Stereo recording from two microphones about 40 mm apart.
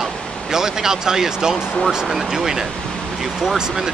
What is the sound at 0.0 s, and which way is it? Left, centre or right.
Speech, centre.